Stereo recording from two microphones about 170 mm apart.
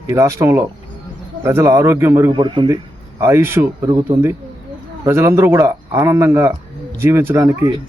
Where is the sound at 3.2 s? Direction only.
15° right (ahead or behind).